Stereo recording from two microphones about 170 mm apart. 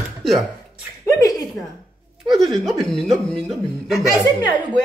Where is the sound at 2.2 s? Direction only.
Centre (ahead or behind).